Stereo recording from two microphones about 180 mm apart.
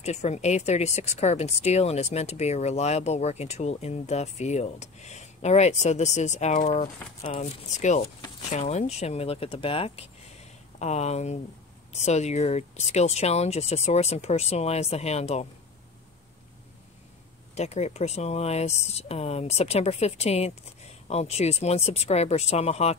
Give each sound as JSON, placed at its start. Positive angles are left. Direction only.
{"t": 0.0, "sound": "speech", "side_deg": 40}
{"t": 17.6, "sound": "speech", "side_deg": 35}